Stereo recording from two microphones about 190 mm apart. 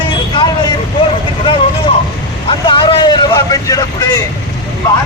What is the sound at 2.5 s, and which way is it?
A man's voice, 25° left (ahead or behind).